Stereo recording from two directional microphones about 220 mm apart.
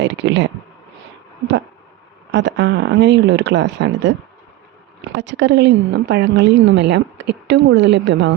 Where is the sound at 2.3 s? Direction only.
55° right (ahead or behind).